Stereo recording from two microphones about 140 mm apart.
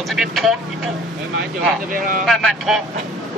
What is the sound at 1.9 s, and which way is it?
Speech, 85° right.